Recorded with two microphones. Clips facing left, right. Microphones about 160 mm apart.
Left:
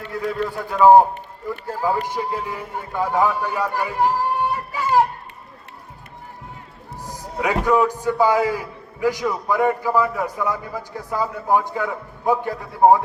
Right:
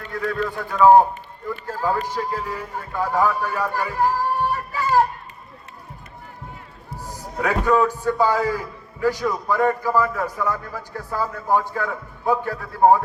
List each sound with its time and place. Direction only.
0.2 s a man's voice: 15° left (ahead or behind)
4.5 s a sound: 15° left (ahead or behind)
7.3 s a man's voice: 15° left (ahead or behind)